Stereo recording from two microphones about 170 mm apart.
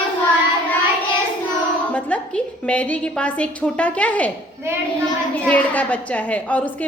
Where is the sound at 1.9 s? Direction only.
10° left (ahead or behind).